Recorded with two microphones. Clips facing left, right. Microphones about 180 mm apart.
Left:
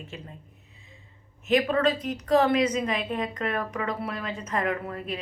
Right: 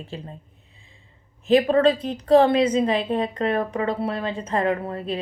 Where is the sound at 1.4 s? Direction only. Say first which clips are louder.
Right 6 dB; 30° right (ahead or behind).